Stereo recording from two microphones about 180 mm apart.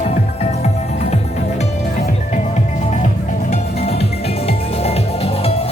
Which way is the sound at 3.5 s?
35° left (ahead or behind).